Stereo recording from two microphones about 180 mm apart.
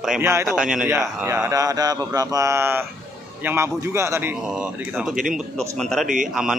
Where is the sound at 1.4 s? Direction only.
20° right (ahead or behind).